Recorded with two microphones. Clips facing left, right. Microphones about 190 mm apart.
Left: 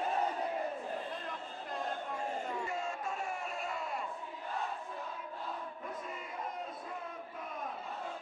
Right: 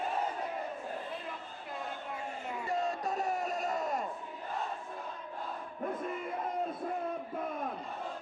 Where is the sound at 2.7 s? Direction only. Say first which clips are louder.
Right 5 dB; 35° right (ahead or behind).